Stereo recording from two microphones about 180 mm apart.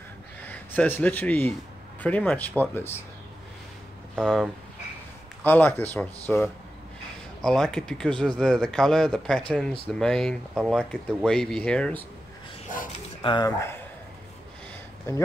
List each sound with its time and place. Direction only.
0.4 s speech: 10° left (ahead or behind)
4.1 s speech: 5° left (ahead or behind)
13.2 s speech: 25° left (ahead or behind)